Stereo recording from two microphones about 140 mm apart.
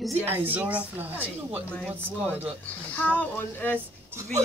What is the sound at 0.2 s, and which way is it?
A woman's voice, 15° right (ahead or behind).